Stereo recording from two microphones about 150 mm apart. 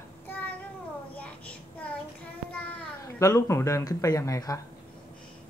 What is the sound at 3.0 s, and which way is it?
Speech, 20° left (ahead or behind).